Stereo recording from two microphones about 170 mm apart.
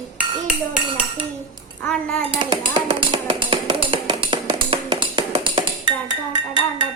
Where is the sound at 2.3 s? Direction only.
25° right (ahead or behind).